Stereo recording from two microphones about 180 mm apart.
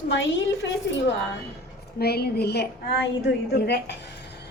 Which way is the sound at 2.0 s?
60° left (ahead or behind).